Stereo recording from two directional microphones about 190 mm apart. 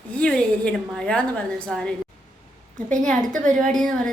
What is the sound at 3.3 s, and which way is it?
Speech, 40° right (ahead or behind).